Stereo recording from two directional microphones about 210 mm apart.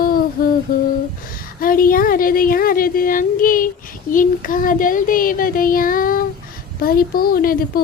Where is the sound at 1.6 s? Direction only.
45° left (ahead or behind).